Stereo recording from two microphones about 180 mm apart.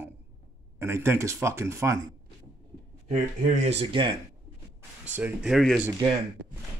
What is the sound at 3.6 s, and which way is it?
Speech, 30° right (ahead or behind).